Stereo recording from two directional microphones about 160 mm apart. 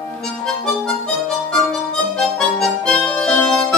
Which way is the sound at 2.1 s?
5° left (ahead or behind).